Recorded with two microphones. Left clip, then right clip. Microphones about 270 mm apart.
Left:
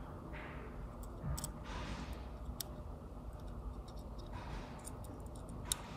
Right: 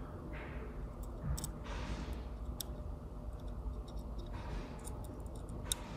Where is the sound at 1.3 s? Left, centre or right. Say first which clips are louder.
Even; centre.